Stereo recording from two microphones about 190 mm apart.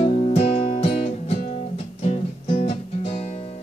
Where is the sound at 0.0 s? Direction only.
30° left (ahead or behind).